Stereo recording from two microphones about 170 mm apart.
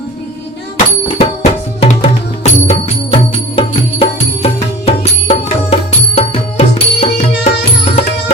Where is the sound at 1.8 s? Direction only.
40° left (ahead or behind).